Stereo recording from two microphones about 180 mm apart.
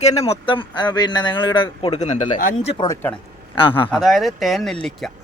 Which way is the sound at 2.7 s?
25° left (ahead or behind).